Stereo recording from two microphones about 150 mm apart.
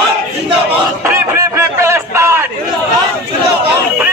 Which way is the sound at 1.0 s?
20° right (ahead or behind).